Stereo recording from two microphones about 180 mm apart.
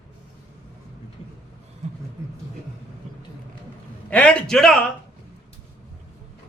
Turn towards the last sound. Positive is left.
turn(degrees=0)  # may be behind; listen again after turning